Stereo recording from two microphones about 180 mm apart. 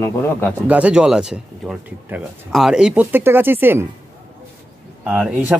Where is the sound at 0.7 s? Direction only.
5° right (ahead or behind).